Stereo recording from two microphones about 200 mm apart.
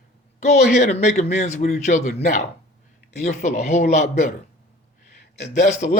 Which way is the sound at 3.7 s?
35° left (ahead or behind).